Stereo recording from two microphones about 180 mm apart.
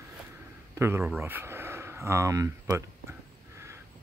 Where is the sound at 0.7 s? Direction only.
15° right (ahead or behind).